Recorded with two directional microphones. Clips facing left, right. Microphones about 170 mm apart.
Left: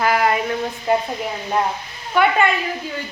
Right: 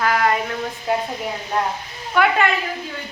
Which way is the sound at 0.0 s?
10° left (ahead or behind).